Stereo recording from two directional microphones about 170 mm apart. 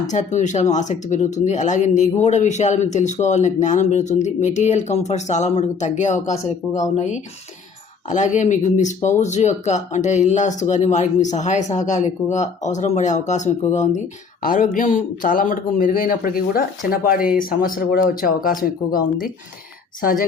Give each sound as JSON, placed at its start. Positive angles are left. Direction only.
{"t": 0.1, "sound": "speech", "side_deg": 45}